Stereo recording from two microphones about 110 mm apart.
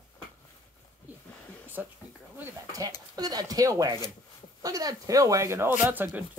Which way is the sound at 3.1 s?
35° right (ahead or behind).